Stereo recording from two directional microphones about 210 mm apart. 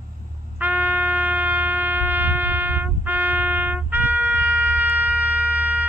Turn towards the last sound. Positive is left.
turn(degrees=-10)  # may be behind; listen again after turning